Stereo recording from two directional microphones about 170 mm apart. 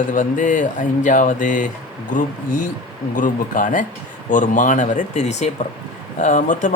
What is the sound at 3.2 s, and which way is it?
Speech, 50° left (ahead or behind).